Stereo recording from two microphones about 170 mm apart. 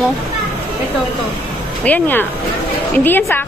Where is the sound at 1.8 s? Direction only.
10° left (ahead or behind).